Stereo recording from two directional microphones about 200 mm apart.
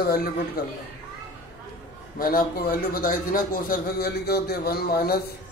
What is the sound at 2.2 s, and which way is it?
A man's voice, 45° left (ahead or behind).